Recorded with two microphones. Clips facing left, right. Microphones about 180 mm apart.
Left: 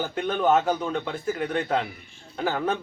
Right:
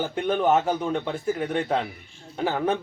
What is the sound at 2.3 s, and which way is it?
Speech, 15° right (ahead or behind).